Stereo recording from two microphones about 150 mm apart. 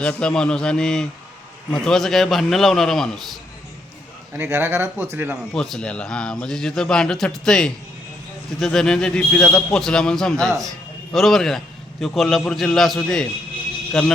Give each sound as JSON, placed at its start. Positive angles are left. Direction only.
{"t": 0.0, "sound": "speech", "side_deg": 5}
{"t": 4.4, "sound": "speech", "side_deg": -15}
{"t": 5.5, "sound": "speech", "side_deg": 5}